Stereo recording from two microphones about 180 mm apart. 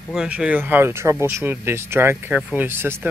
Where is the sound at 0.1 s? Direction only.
5° right (ahead or behind).